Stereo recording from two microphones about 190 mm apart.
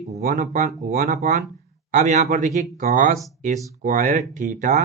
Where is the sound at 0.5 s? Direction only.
45° right (ahead or behind).